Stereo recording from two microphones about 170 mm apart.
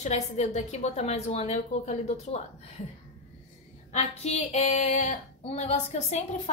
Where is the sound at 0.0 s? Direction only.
40° left (ahead or behind).